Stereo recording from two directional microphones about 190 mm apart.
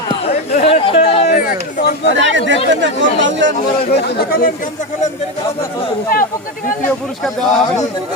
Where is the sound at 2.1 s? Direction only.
75° right (ahead or behind).